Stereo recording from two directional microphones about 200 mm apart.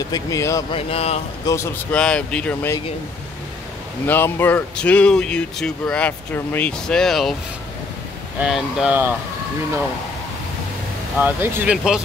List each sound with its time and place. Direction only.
0.1 s speech: 15° left (ahead or behind)
0.7 s speech: 30° left (ahead or behind)
1.4 s speech: 15° left (ahead or behind)
4.1 s speech: 10° left (ahead or behind)
8.4 s speech: centre (ahead or behind)
11.1 s speech: 10° right (ahead or behind)